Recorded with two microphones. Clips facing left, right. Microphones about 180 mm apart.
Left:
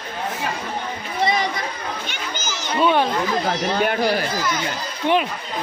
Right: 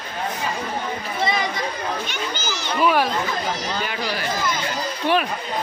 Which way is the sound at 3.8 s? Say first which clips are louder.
Left 7 dB; 50° left (ahead or behind).